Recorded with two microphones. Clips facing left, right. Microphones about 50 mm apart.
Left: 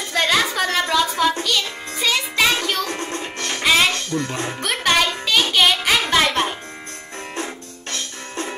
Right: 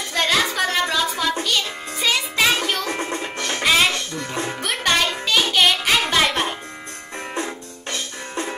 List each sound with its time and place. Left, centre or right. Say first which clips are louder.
0.1 s music: left 1 dB; centre
3.6 s music: left 1 dB; centre
3.9 s music: left 3 dB; centre
4.4 s music: even; centre
7.4 s music: right 1 dB; centre